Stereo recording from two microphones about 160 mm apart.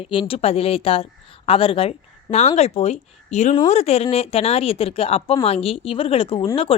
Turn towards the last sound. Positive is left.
turn(degrees=35)  # may be behind; listen again after turning